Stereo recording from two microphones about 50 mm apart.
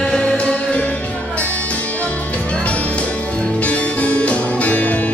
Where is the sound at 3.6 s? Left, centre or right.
Left.